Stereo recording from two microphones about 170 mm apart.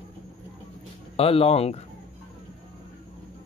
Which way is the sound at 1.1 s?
35° left (ahead or behind).